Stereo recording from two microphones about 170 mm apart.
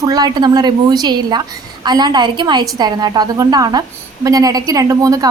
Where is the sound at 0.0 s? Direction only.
20° right (ahead or behind).